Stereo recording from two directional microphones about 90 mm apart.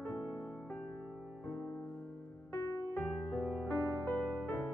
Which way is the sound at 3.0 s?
25° left (ahead or behind).